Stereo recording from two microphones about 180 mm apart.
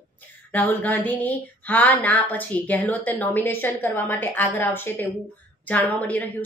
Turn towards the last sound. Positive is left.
turn(degrees=10)  # may be behind; listen again after turning